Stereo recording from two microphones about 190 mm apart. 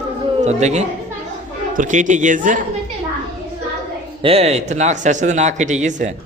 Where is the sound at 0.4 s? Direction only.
35° right (ahead or behind).